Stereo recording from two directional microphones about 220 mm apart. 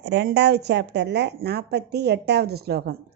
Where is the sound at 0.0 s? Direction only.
50° right (ahead or behind).